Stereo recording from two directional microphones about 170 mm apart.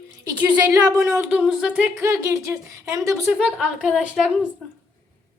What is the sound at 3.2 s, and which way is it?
A woman's voice, centre (ahead or behind).